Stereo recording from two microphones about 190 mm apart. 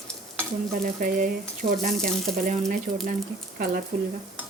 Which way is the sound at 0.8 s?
45° right (ahead or behind).